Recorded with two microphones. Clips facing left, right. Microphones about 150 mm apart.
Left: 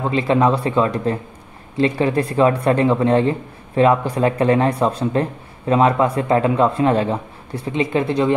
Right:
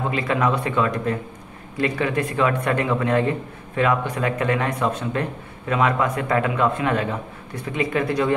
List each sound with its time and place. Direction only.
0.1 s speech: 30° left (ahead or behind)